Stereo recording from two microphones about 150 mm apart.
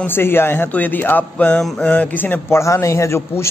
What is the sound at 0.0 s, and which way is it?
Speech, 15° left (ahead or behind).